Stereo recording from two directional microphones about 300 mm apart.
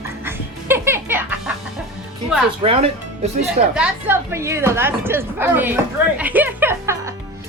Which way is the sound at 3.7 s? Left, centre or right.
Centre.